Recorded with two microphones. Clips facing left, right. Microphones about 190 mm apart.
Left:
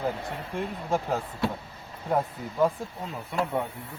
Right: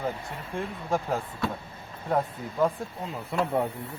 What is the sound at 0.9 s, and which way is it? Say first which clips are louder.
Speech: even; 5° left (ahead or behind).